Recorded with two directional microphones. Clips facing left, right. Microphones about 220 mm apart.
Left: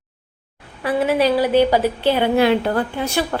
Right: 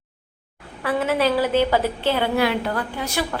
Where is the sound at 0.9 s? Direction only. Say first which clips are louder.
Left 3 dB; 15° left (ahead or behind).